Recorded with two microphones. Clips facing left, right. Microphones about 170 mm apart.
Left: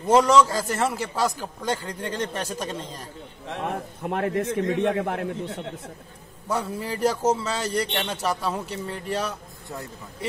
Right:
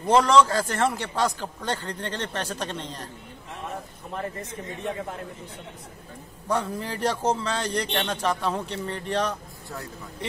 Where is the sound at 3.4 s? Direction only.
80° left.